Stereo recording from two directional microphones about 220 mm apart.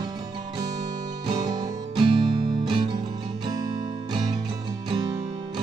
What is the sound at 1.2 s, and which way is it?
Music, 20° right (ahead or behind).